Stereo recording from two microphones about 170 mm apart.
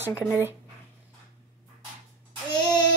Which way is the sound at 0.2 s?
10° right (ahead or behind).